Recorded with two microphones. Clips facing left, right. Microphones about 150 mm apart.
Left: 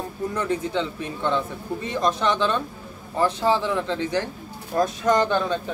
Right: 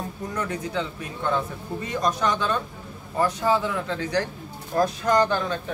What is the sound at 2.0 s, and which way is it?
Speech, 25° left (ahead or behind).